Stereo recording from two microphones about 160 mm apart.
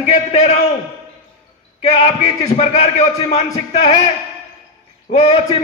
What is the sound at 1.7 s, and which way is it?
A man's voice, 40° left (ahead or behind).